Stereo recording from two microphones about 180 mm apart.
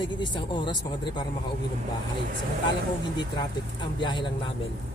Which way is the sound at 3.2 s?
25° left (ahead or behind).